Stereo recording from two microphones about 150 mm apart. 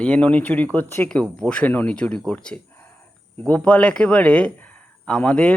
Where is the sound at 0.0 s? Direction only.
10° left (ahead or behind).